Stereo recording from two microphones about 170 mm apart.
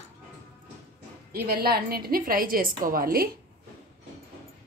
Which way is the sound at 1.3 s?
60° right (ahead or behind).